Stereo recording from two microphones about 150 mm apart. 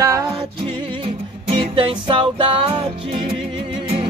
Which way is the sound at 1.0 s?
40° right (ahead or behind).